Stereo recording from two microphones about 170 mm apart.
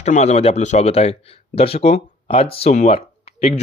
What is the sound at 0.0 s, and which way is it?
Speech, 40° left (ahead or behind).